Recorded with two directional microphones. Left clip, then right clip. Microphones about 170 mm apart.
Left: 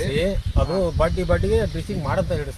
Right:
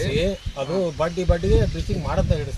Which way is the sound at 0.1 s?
20° right (ahead or behind).